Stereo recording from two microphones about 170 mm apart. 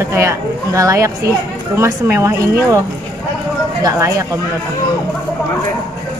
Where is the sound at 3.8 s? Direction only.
20° right (ahead or behind).